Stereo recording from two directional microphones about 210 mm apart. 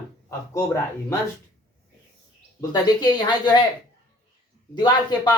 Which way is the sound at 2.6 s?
20° left (ahead or behind).